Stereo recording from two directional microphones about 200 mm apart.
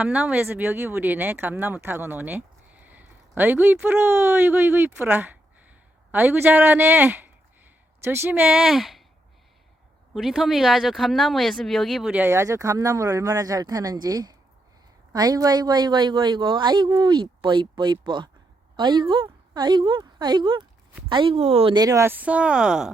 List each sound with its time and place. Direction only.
0.0 s speech: 5° right (ahead or behind)
10.2 s a woman's voice: centre (ahead or behind)